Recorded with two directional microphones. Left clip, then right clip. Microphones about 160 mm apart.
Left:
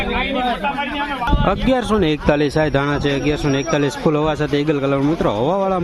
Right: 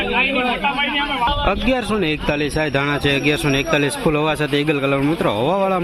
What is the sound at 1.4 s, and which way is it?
A man's voice, 20° left (ahead or behind).